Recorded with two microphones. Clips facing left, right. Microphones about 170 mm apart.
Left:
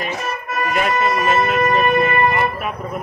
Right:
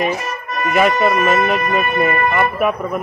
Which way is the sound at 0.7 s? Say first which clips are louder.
Right 5 dB; 65° right (ahead or behind).